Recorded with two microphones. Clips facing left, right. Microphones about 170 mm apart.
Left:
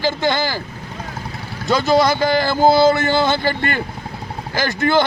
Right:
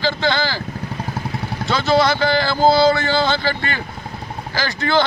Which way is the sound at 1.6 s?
40° left (ahead or behind).